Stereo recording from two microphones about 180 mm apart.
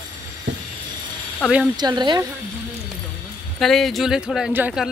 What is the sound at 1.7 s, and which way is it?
Speech, 25° right (ahead or behind).